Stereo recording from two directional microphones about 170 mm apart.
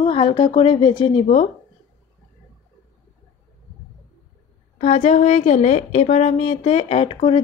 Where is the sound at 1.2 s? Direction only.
55° left (ahead or behind).